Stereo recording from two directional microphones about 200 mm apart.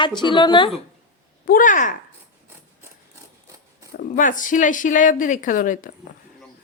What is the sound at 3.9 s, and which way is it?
Speech, 45° left (ahead or behind).